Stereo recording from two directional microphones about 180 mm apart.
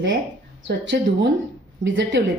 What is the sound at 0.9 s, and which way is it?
Speech, 70° right (ahead or behind).